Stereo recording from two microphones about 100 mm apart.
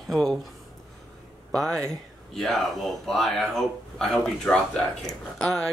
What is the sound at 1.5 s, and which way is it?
Speech, 5° left (ahead or behind).